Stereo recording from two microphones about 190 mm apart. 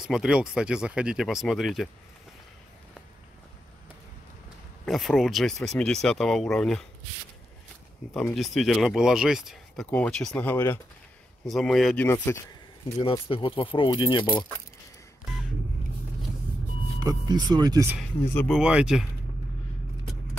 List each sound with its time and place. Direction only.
0.0 s speech: 5° right (ahead or behind)
4.8 s speech: centre (ahead or behind)
8.1 s speech: centre (ahead or behind)
11.4 s speech: centre (ahead or behind)
13.0 s speech: 25° left (ahead or behind)
17.0 s speech: 20° right (ahead or behind)
18.2 s speech: 10° left (ahead or behind)
18.5 s speech: 5° right (ahead or behind)